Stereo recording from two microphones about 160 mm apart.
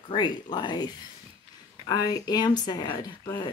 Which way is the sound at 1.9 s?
25° left (ahead or behind).